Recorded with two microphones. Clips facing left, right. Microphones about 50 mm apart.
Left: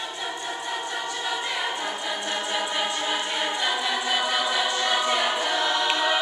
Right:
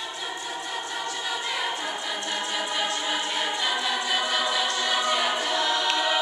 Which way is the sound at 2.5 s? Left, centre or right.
Centre.